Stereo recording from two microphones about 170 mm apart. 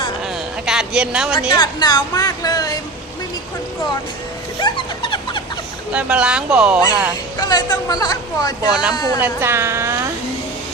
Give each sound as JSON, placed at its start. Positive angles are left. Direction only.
{"t": 0.6, "sound": "speech", "side_deg": -5}
{"t": 1.5, "sound": "speech", "side_deg": 25}
{"t": 4.6, "sound": "dog", "side_deg": 30}
{"t": 5.9, "sound": "speech", "side_deg": -5}
{"t": 7.3, "sound": "speech", "side_deg": 20}
{"t": 8.7, "sound": "speech", "side_deg": -5}
{"t": 9.0, "sound": "speech", "side_deg": 20}
{"t": 9.2, "sound": "a woman's voice", "side_deg": -15}